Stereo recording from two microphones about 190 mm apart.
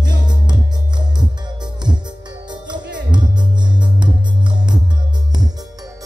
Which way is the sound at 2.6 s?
25° right (ahead or behind).